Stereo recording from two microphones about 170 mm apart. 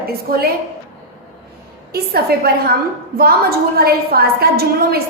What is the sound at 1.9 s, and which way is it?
Speech, 65° right (ahead or behind).